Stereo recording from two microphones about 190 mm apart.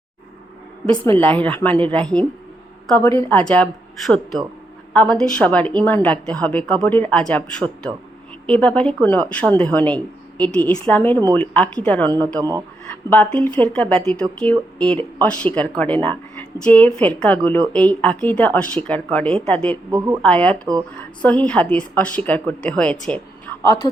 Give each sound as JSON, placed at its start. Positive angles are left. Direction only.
{"t": 1.2, "sound": "a woman's voice", "side_deg": 10}
{"t": 12.4, "sound": "speech", "side_deg": -20}
{"t": 13.1, "sound": "a woman's voice", "side_deg": 10}
{"t": 19.9, "sound": "a woman's voice", "side_deg": -15}
{"t": 20.2, "sound": "a woman's voice", "side_deg": 5}